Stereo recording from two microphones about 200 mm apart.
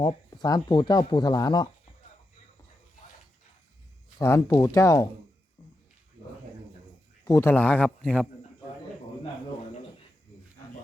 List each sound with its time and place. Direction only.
0.0 s speech: 20° left (ahead or behind)
4.2 s speech: 15° left (ahead or behind)
7.3 s speech: 15° left (ahead or behind)